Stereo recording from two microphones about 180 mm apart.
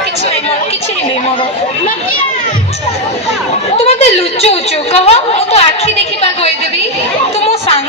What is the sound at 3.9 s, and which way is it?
A woman's voice, 35° left (ahead or behind).